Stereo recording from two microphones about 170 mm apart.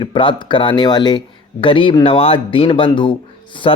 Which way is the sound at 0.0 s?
30° left (ahead or behind).